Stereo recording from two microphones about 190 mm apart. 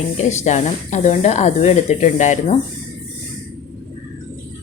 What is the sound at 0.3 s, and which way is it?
A woman's voice, 35° left (ahead or behind).